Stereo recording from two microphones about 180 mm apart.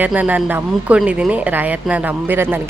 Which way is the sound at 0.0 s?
10° right (ahead or behind).